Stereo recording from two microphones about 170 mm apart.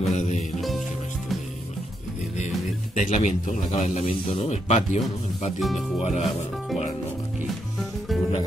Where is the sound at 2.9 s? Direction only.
50° left (ahead or behind).